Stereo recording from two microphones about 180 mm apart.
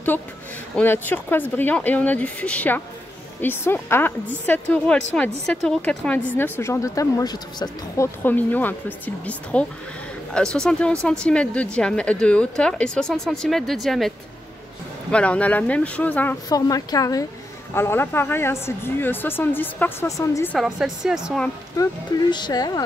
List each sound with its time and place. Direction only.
0.7 s speech: 10° left (ahead or behind)
8.2 s a woman's voice: 10° left (ahead or behind)
16.4 s a woman's voice: 20° left (ahead or behind)
20.5 s a woman's voice: centre (ahead or behind)
21.8 s a woman's voice: 20° left (ahead or behind)